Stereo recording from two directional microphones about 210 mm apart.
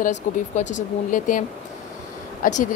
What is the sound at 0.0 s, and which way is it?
Speech, 35° left (ahead or behind).